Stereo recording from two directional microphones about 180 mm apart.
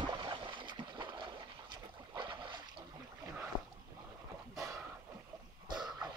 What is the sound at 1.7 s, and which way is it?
Boat, 25° right (ahead or behind).